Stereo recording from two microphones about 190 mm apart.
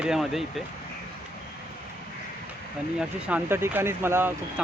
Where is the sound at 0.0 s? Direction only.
Centre (ahead or behind).